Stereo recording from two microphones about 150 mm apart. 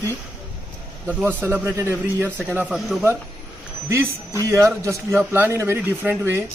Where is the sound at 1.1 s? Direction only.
5° right (ahead or behind).